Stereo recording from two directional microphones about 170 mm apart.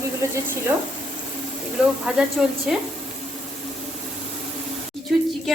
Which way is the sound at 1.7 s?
5° right (ahead or behind).